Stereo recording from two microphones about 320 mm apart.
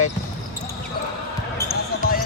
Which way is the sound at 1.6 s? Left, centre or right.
Left.